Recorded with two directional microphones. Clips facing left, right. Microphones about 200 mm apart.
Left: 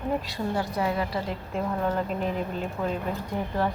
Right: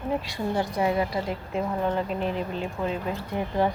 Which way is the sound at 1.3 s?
5° right (ahead or behind).